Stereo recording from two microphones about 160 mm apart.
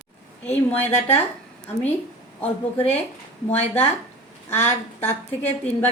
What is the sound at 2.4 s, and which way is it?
Speech, 40° left (ahead or behind).